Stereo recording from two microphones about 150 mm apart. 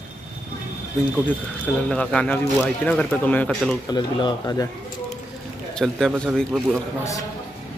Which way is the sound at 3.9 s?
30° left (ahead or behind).